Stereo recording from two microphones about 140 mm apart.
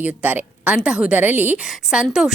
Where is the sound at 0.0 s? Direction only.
10° right (ahead or behind).